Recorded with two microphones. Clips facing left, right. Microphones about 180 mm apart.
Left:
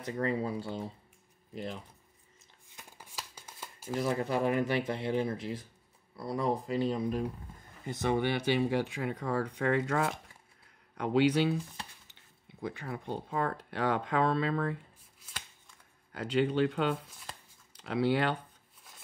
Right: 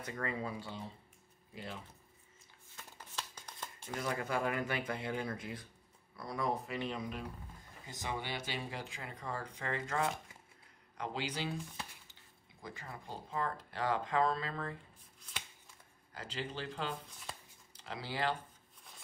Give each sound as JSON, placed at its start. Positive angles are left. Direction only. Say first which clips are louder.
{"t": 0.1, "sound": "speech", "louder": "left 8 dB", "side_deg": 30}
{"t": 2.7, "sound": "shuffling cards", "louder": "even", "side_deg": 10}
{"t": 4.0, "sound": "speech", "louder": "left 6 dB", "side_deg": 25}
{"t": 7.8, "sound": "speech", "louder": "left 12 dB", "side_deg": 65}
{"t": 12.6, "sound": "speech", "louder": "left 10 dB", "side_deg": 65}
{"t": 16.1, "sound": "speech", "louder": "left 13 dB", "side_deg": 65}
{"t": 18.9, "sound": "rub", "louder": "even", "side_deg": 0}